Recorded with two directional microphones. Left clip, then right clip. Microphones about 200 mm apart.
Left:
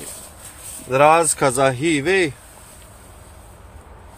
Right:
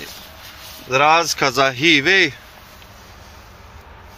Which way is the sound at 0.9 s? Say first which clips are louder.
Left 1 dB; 35° left (ahead or behind).